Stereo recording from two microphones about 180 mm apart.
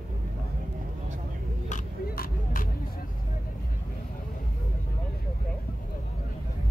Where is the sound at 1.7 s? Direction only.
50° left (ahead or behind).